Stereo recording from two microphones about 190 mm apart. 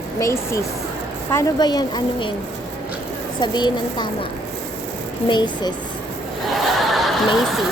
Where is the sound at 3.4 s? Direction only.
25° left (ahead or behind).